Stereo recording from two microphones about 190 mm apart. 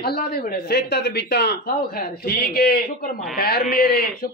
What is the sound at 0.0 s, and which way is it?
Speech, 55° left (ahead or behind).